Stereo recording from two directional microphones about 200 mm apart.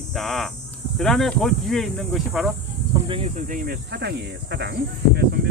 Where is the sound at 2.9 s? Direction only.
25° right (ahead or behind).